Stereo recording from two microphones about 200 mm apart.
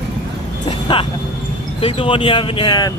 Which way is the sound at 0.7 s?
25° left (ahead or behind).